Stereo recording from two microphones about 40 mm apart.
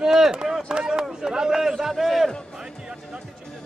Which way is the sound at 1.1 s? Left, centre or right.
Centre.